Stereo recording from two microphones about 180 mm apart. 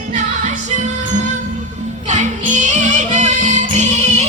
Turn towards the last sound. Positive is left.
turn(degrees=-40)  # may be behind; listen again after turning